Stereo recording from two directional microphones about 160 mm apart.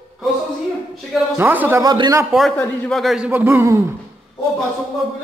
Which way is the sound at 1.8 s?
25° right (ahead or behind).